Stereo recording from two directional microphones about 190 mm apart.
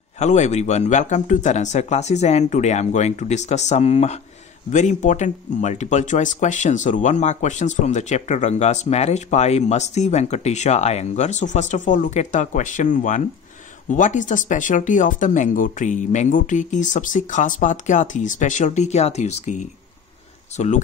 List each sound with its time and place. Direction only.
0.2 s speech: 35° left (ahead or behind)